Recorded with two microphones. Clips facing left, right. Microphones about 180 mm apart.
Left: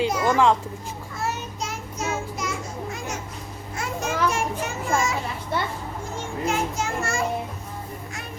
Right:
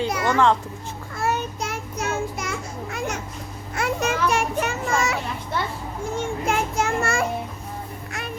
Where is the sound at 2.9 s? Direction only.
65° right (ahead or behind).